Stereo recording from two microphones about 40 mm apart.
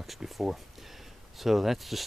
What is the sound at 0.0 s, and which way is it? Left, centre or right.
Speech, centre.